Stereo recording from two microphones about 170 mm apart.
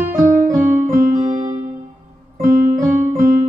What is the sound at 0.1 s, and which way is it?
Music, 50° right (ahead or behind).